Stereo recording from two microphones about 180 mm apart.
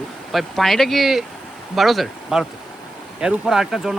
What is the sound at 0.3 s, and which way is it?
Speech, centre (ahead or behind).